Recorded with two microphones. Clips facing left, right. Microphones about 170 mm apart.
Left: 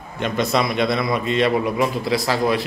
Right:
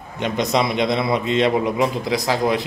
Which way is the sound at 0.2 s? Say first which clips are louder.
Even; 20° right (ahead or behind).